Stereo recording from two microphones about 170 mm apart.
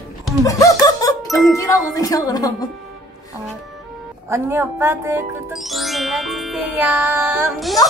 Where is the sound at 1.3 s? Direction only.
Centre (ahead or behind).